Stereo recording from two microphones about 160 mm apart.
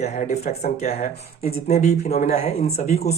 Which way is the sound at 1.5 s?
70° left (ahead or behind).